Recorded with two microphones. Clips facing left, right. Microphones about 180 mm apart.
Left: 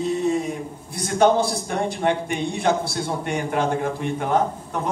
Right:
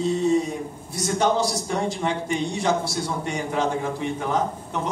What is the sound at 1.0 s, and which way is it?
A man's voice, 55° left (ahead or behind).